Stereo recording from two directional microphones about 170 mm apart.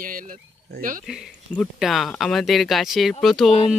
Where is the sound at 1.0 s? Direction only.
Centre (ahead or behind).